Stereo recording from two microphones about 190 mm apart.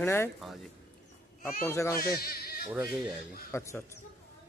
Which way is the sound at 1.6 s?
15° left (ahead or behind).